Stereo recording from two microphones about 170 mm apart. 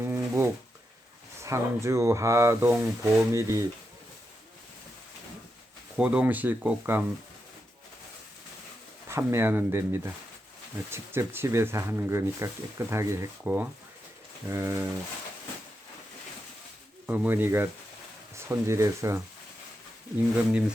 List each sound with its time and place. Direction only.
0.0 s a sound: 15° right (ahead or behind)
1.4 s speech: 15° right (ahead or behind)
6.0 s speech: 10° right (ahead or behind)
9.0 s speech: 15° right (ahead or behind)
17.1 s speech: 10° right (ahead or behind)
20.5 s speech: 5° right (ahead or behind)